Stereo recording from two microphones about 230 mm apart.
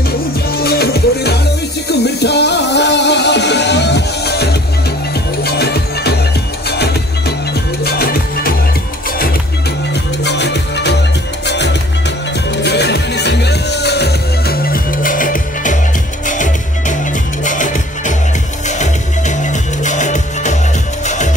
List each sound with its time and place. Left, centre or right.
0.5 s music: left
10.2 s music: left